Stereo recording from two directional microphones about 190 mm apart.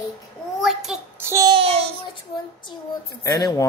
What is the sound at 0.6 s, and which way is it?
Child singing, centre (ahead or behind).